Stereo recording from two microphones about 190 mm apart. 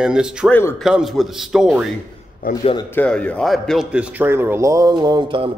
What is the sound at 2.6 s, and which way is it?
Speech, 30° left (ahead or behind).